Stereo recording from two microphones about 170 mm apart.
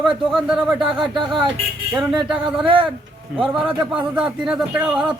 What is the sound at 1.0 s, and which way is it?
Speech, 30° right (ahead or behind).